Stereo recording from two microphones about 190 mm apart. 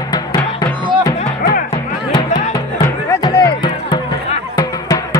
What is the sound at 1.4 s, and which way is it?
Music, 50° left (ahead or behind).